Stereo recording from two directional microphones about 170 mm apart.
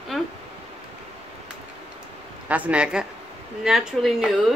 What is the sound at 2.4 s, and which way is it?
Speech, 10° right (ahead or behind).